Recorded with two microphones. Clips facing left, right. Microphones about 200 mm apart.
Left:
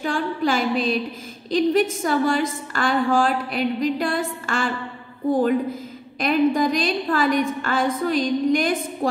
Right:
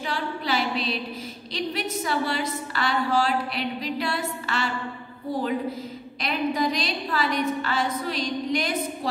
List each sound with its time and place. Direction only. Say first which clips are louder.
0.0 s a sound: left 7 dB; 50° left (ahead or behind)
1.5 s a woman's voice: left 11 dB; 50° left (ahead or behind)
6.2 s a woman's voice: left 7 dB; 50° left (ahead or behind)